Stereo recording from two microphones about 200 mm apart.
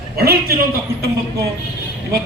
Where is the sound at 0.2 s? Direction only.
50° right (ahead or behind).